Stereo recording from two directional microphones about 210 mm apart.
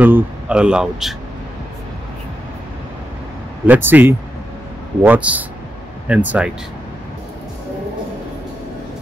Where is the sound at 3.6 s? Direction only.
10° right (ahead or behind).